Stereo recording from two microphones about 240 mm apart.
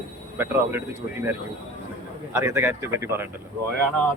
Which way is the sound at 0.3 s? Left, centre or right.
Centre.